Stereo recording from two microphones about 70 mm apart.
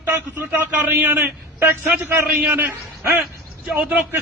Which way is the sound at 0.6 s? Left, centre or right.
Right.